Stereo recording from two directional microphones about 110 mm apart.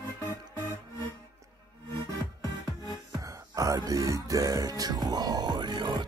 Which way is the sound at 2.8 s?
30° right (ahead or behind).